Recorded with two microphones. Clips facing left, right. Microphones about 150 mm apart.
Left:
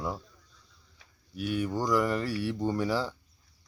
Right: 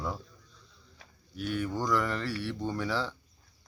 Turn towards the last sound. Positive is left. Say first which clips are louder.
# left 3 dB
turn(degrees=10)  # may be behind; listen again after turning